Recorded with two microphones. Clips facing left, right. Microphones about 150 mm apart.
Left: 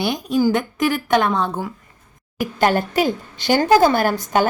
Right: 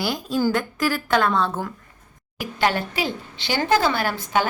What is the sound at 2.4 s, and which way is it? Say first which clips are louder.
A woman's voice: left 5 dB; 45° left (ahead or behind).